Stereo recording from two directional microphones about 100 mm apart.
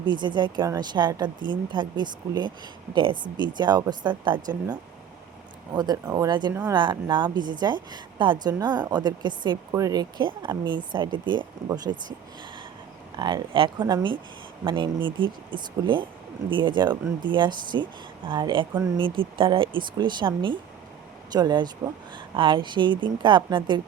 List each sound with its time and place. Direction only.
0.0 s speech: 50° right (ahead or behind)
5.7 s speech: 40° right (ahead or behind)
9.7 s speech: 40° right (ahead or behind)
13.1 s speech: 50° right (ahead or behind)
21.3 s speech: 45° right (ahead or behind)